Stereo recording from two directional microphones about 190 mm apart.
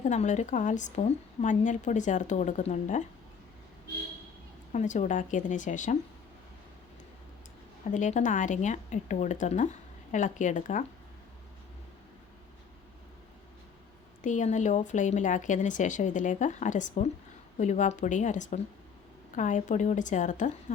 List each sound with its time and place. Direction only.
0.0 s a woman's voice: 40° left (ahead or behind)
4.7 s a woman's voice: 40° left (ahead or behind)
7.9 s a woman's voice: 40° left (ahead or behind)
14.2 s a woman's voice: 40° left (ahead or behind)